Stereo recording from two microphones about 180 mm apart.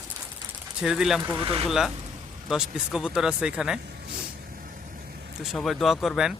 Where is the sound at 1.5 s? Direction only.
30° right (ahead or behind).